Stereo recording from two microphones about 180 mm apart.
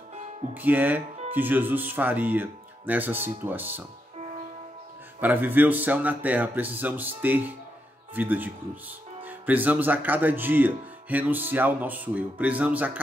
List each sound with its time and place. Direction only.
0.6 s speech: 10° right (ahead or behind)
5.2 s speech: 10° right (ahead or behind)